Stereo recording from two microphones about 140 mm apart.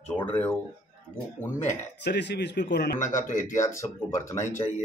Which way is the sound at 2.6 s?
90° left.